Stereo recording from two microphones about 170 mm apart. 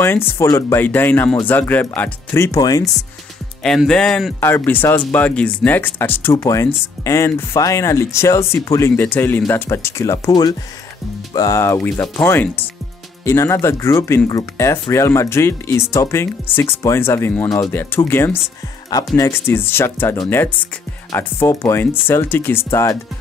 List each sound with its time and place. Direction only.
0.0 s speech: 15° left (ahead or behind)
3.6 s speech: 5° left (ahead or behind)
4.5 s speech: 15° left (ahead or behind)